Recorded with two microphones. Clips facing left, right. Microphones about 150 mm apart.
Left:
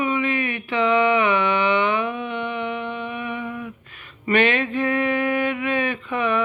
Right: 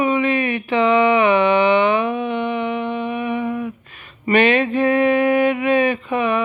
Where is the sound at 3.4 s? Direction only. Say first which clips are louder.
Right 7 dB; 35° right (ahead or behind).